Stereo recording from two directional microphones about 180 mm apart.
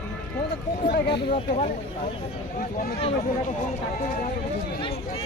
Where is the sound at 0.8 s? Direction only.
60° left (ahead or behind).